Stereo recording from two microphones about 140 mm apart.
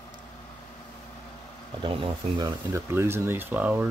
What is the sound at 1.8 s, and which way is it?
Speech, 35° right (ahead or behind).